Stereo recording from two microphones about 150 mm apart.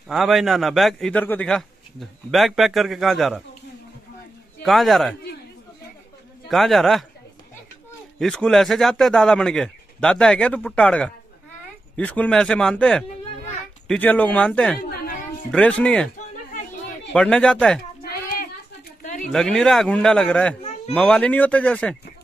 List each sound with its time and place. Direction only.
0.1 s a man's voice: centre (ahead or behind)
4.6 s a man's voice: centre (ahead or behind)
6.5 s a man's voice: centre (ahead or behind)
8.2 s a man's voice: 5° left (ahead or behind)
17.1 s a man's voice: 5° left (ahead or behind)
18.0 s a sound: 80° left
19.2 s a man's voice: 5° left (ahead or behind)